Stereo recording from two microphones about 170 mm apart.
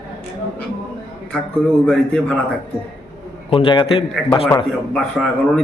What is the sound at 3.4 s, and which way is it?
Speech, 30° left (ahead or behind).